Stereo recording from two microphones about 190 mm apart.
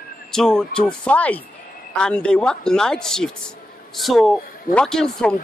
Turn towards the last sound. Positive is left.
turn(degrees=0)  # may be behind; listen again after turning